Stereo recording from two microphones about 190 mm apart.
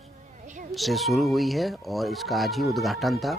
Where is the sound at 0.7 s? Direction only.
Centre (ahead or behind).